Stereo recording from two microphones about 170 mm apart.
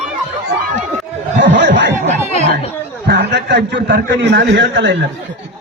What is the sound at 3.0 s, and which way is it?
A man's voice, 75° right (ahead or behind).